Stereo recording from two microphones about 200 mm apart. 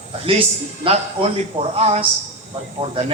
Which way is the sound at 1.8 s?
30° right (ahead or behind).